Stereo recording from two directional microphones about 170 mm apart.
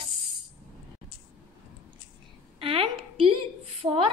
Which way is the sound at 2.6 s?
35° right (ahead or behind).